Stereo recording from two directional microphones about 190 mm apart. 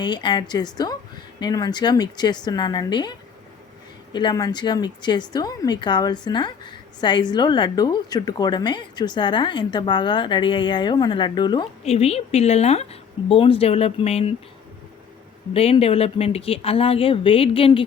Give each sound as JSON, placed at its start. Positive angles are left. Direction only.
{"t": 0.0, "sound": "a woman's voice", "side_deg": 25}
{"t": 15.5, "sound": "a woman's voice", "side_deg": 30}